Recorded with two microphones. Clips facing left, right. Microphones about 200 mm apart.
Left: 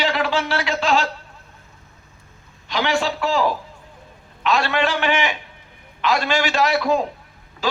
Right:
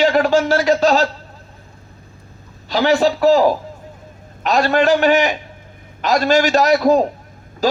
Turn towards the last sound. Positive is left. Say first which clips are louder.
# right 7 dB
turn(degrees=-40)  # may be behind; listen again after turning